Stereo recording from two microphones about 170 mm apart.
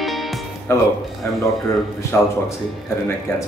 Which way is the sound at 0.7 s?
15° left (ahead or behind).